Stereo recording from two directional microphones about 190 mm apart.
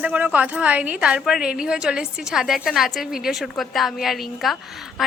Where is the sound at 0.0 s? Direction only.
10° right (ahead or behind).